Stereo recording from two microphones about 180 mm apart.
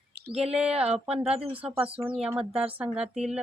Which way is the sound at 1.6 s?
30° right (ahead or behind).